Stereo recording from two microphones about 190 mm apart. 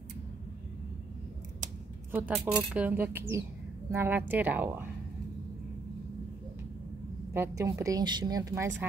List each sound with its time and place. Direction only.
2.1 s a woman's voice: 10° right (ahead or behind)
7.3 s a woman's voice: 15° right (ahead or behind)